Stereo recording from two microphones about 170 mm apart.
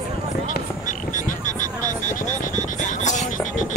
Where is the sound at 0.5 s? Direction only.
50° left (ahead or behind).